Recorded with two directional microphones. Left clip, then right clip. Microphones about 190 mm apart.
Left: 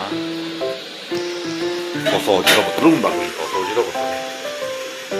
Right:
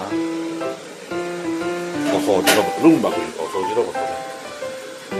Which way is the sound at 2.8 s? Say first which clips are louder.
Right 1 dB; 20° right (ahead or behind).